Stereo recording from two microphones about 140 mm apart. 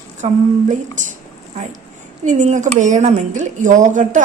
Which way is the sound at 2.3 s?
60° right (ahead or behind).